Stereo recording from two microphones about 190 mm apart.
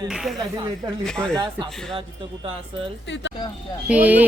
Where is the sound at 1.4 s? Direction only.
20° right (ahead or behind).